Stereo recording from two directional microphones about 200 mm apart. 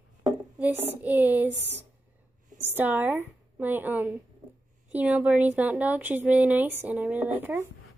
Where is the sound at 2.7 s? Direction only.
10° right (ahead or behind).